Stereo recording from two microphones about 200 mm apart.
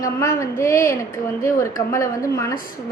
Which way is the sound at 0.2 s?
15° left (ahead or behind).